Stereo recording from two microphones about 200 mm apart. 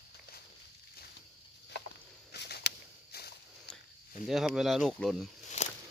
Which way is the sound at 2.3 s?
55° left (ahead or behind).